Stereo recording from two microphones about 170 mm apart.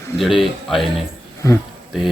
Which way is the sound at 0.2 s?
Centre (ahead or behind).